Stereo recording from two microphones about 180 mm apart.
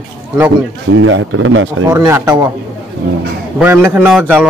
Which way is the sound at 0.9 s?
90° right.